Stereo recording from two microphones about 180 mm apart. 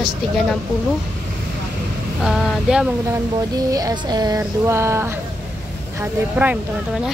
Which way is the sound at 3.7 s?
20° right (ahead or behind).